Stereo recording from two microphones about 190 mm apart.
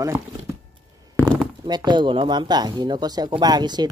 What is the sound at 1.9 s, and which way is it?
Speech, 25° right (ahead or behind).